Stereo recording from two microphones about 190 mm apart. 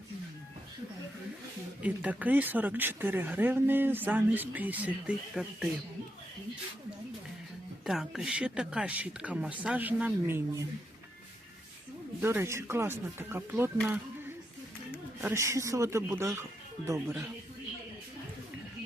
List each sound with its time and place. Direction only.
1.8 s speech: 10° right (ahead or behind)
7.9 s speech: centre (ahead or behind)
12.2 s speech: 10° right (ahead or behind)
15.2 s speech: 15° right (ahead or behind)